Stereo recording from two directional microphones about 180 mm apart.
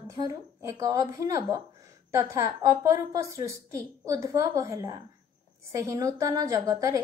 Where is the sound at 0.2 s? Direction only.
20° right (ahead or behind).